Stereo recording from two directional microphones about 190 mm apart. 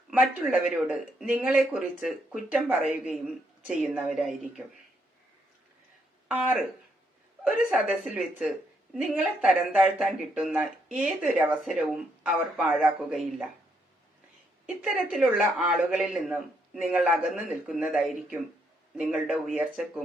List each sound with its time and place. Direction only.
0.1 s speech: 5° right (ahead or behind)
6.2 s speech: 10° right (ahead or behind)
14.8 s speech: centre (ahead or behind)